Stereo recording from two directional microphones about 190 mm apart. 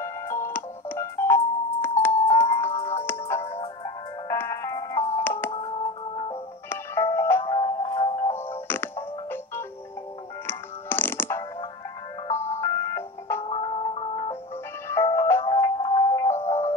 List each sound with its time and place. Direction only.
0.0 s music: 15° left (ahead or behind)
6.7 s music: 10° left (ahead or behind)
7.4 s music: 25° left (ahead or behind)
8.5 s music: 10° left (ahead or behind)
13.4 s music: 30° left (ahead or behind)
14.9 s music: 15° left (ahead or behind)
15.4 s music: 25° left (ahead or behind)
16.3 s music: 35° left (ahead or behind)